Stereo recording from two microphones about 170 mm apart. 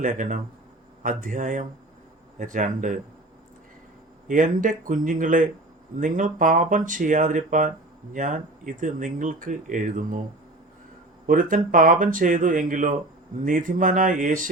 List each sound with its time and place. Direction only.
0.0 s speech: 50° right (ahead or behind)
4.3 s speech: 50° right (ahead or behind)
11.3 s speech: 55° right (ahead or behind)